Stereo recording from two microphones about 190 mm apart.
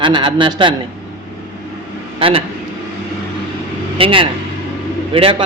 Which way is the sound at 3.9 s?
30° right (ahead or behind).